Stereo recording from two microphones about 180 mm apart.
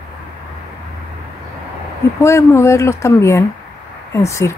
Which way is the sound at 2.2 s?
15° left (ahead or behind).